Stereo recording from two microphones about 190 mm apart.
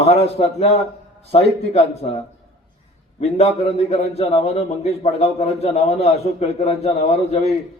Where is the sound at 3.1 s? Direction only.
35° left (ahead or behind).